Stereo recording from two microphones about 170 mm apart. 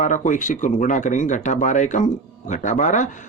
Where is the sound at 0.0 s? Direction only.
50° left (ahead or behind).